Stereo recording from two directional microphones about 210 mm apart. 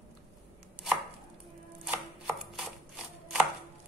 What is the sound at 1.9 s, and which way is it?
Chopping, centre (ahead or behind).